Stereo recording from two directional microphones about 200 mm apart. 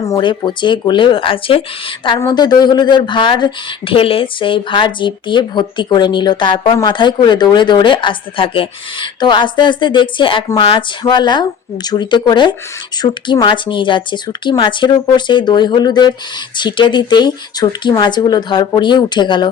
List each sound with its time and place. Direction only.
0.0 s speech: 20° left (ahead or behind)